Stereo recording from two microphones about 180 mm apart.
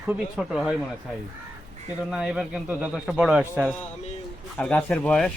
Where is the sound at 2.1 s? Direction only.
5° right (ahead or behind).